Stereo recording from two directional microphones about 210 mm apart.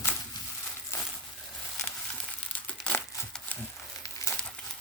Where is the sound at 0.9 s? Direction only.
10° left (ahead or behind).